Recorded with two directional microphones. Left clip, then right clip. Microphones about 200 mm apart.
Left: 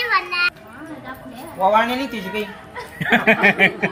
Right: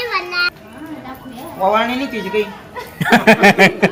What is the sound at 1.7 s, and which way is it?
Speech, 50° left (ahead or behind).